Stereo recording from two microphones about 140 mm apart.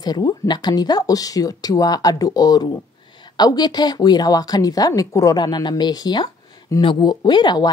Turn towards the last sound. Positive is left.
turn(degrees=30)  # may be behind; listen again after turning